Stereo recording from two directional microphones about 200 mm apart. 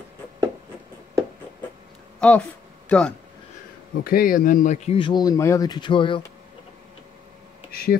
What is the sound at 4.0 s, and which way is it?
Speech, 45° left (ahead or behind).